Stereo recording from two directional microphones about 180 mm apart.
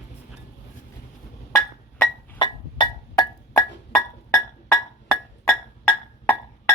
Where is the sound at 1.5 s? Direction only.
10° left (ahead or behind).